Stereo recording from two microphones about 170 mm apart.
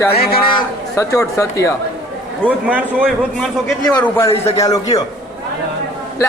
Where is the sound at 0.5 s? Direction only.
20° left (ahead or behind).